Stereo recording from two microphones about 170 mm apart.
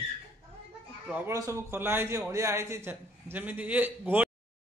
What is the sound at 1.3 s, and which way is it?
Speech, 15° right (ahead or behind).